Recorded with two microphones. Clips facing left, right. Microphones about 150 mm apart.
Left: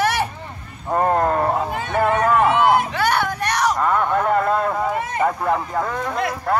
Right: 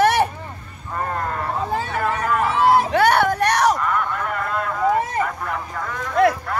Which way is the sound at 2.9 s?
55° right (ahead or behind).